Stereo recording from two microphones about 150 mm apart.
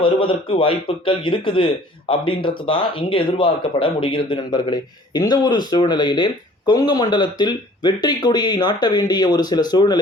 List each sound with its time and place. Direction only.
0.0 s a man's voice: 35° left (ahead or behind)